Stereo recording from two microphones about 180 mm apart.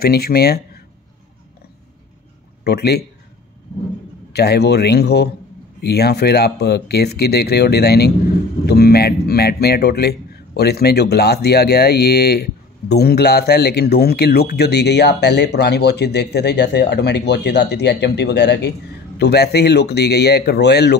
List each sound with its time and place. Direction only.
0.0 s a man's voice: 60° left (ahead or behind)
2.6 s a man's voice: 65° left (ahead or behind)
4.3 s a man's voice: 65° left (ahead or behind)